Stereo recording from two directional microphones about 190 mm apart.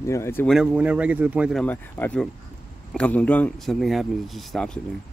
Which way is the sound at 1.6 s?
10° left (ahead or behind).